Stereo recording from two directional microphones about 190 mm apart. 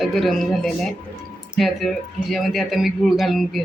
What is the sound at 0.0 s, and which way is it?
Speech, centre (ahead or behind).